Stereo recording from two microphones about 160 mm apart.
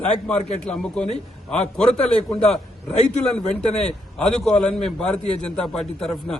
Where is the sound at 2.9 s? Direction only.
45° left (ahead or behind).